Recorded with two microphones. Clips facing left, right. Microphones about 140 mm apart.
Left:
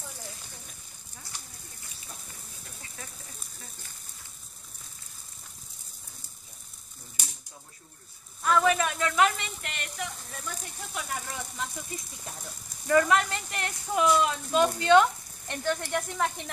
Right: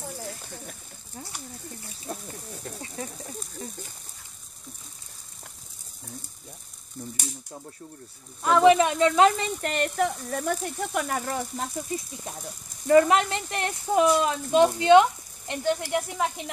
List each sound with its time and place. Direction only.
0.5 s a sound: 65° right (ahead or behind)
2.1 s speech: 70° right (ahead or behind)
8.4 s speech: 25° right (ahead or behind)
9.6 s speech: 40° right (ahead or behind)
12.8 s speech: 30° right (ahead or behind); by 16.4 s 10° right (ahead or behind)